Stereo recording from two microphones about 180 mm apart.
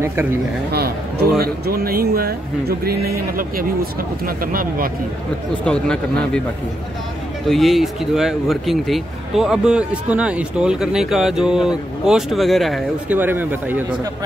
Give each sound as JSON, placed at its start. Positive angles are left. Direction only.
{"t": 0.0, "sound": "speech", "side_deg": -15}
{"t": 0.7, "sound": "a man's voice", "side_deg": -60}
{"t": 5.7, "sound": "speech", "side_deg": 5}
{"t": 7.4, "sound": "speech", "side_deg": 0}
{"t": 13.1, "sound": "speech", "side_deg": -10}